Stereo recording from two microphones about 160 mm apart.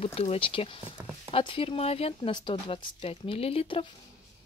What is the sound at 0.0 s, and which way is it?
Speech, 40° left (ahead or behind).